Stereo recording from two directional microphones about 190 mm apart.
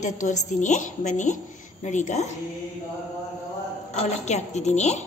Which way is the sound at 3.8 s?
35° left (ahead or behind).